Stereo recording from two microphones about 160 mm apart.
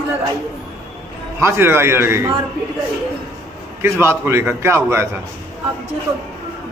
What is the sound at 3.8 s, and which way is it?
A man's voice, 15° right (ahead or behind).